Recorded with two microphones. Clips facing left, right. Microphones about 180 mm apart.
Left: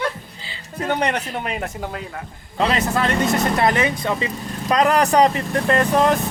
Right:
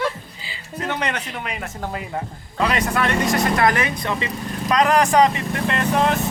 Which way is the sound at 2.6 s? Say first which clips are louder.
Left 1 dB; 30° left (ahead or behind).